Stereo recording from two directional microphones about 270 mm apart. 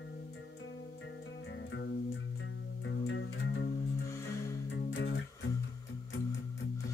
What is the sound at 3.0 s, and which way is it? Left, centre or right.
Music, left.